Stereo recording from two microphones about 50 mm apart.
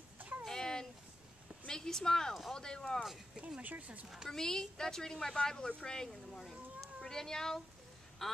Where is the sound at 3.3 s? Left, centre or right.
Centre.